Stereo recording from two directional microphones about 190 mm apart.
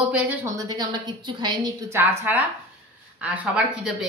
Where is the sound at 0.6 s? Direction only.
20° right (ahead or behind).